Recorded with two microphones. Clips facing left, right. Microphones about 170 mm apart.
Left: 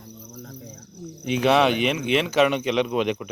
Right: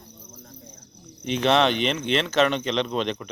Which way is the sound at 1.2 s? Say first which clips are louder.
Left 1 dB; 5° left (ahead or behind).